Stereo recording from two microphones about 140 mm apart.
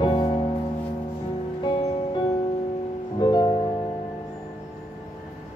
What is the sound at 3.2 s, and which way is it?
Music, 30° left (ahead or behind).